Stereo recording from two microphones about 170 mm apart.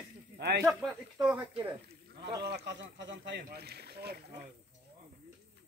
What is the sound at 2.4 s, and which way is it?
Speech, 80° right.